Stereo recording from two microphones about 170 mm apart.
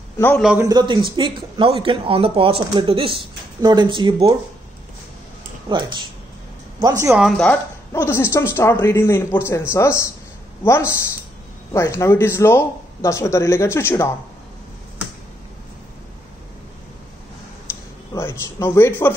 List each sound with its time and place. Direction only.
0.6 s speech: 25° right (ahead or behind)
5.7 s speech: 25° right (ahead or behind)
7.2 s speech: centre (ahead or behind)
7.9 s speech: 15° left (ahead or behind)
11.7 s speech: 15° left (ahead or behind)
18.1 s speech: 15° left (ahead or behind)